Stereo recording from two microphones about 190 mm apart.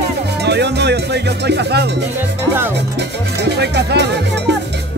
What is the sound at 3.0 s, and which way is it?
Speech, 65° right (ahead or behind).